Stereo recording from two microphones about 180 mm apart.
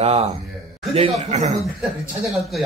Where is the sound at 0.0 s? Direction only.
35° right (ahead or behind).